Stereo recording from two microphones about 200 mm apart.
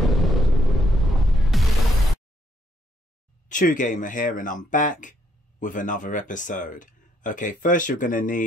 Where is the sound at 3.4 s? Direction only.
40° left (ahead or behind).